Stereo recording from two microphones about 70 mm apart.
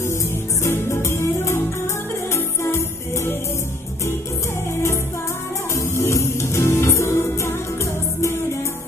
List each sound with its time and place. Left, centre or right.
0.7 s music: left
5.8 s music: left